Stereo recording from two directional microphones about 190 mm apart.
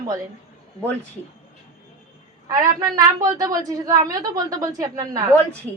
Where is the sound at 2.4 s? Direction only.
20° right (ahead or behind).